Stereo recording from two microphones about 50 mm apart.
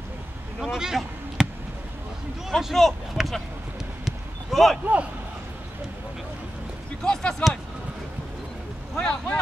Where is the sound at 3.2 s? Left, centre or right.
Centre.